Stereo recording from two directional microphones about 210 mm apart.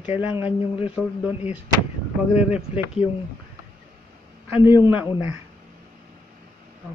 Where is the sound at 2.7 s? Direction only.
30° left (ahead or behind).